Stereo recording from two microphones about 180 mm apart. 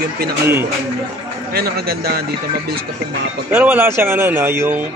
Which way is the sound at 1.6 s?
60° right (ahead or behind).